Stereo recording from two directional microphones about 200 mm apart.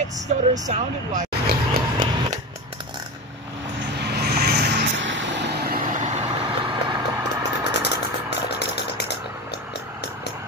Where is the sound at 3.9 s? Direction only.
55° right (ahead or behind).